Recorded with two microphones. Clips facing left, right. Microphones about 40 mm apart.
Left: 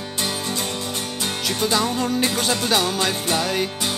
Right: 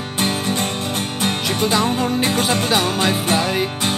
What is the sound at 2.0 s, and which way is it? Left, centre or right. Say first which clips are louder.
Music: right 3 dB; centre.